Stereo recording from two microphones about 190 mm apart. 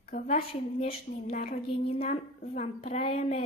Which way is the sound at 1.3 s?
50° left (ahead or behind).